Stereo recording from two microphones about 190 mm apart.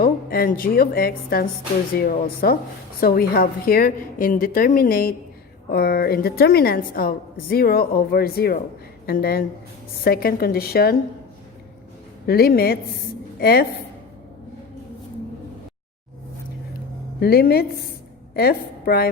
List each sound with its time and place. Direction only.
0.0 s a woman's voice: 50° left (ahead or behind)
12.2 s a woman's voice: 55° left (ahead or behind)
17.2 s a woman's voice: 55° left (ahead or behind)